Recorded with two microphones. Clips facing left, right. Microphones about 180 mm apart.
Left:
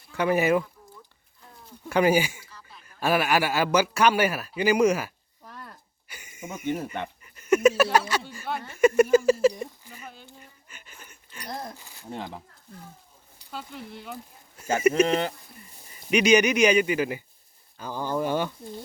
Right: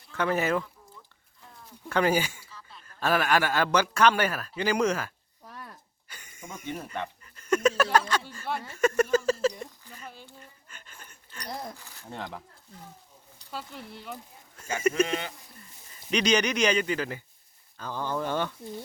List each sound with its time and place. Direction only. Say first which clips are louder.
0.1 s speech: left 4 dB; 10° left (ahead or behind)
1.9 s a man's voice: left 4 dB; 10° left (ahead or behind)
5.5 s a sound: left 1 dB; 10° right (ahead or behind)
6.1 s speech: left 5 dB; 10° left (ahead or behind)
8.3 s a sound: left 1 dB; 10° left (ahead or behind)
13.5 s speech: left 2 dB; centre (ahead or behind)
16.0 s speech: left 5 dB; 10° left (ahead or behind)